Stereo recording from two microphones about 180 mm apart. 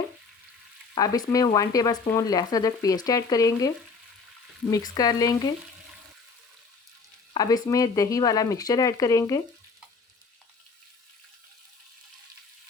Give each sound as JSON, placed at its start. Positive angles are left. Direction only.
{"t": 0.9, "sound": "frying", "side_deg": 20}
{"t": 4.7, "sound": "frying", "side_deg": 20}
{"t": 7.3, "sound": "frying", "side_deg": 20}